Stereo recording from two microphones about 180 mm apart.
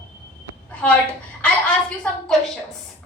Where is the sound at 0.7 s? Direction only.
5° left (ahead or behind).